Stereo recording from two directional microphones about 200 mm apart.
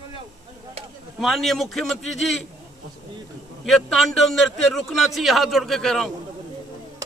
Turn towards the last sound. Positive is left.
turn(degrees=0)  # may be behind; listen again after turning